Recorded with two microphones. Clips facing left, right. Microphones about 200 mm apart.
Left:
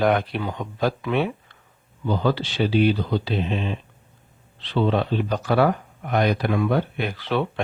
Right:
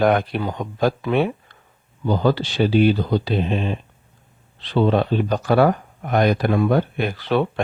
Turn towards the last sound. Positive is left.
turn(degrees=-45)  # may be behind; listen again after turning